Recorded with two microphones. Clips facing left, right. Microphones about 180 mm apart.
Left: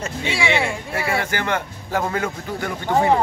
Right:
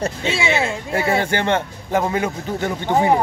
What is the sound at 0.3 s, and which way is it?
Speech, 25° right (ahead or behind).